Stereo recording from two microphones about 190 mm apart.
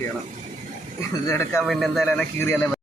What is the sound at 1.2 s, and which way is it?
Speech, 15° left (ahead or behind).